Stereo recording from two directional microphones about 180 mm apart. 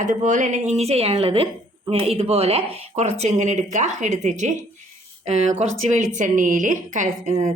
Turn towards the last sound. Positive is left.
turn(degrees=-45)  # may be behind; listen again after turning